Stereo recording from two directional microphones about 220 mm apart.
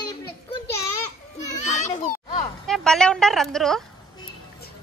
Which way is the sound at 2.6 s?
Centre (ahead or behind).